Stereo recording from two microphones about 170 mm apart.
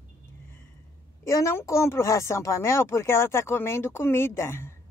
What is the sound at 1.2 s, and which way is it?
Speech, 15° left (ahead or behind).